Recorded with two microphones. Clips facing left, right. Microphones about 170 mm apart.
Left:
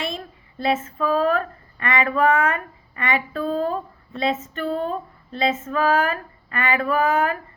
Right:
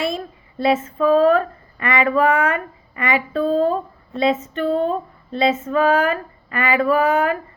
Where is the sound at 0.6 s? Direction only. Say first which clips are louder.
Right 5 dB; 35° right (ahead or behind).